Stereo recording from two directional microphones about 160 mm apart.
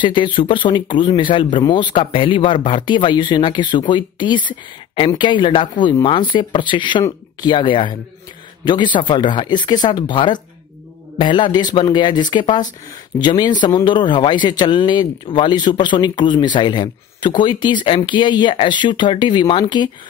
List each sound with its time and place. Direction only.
0.0 s a man's voice: 30° left (ahead or behind)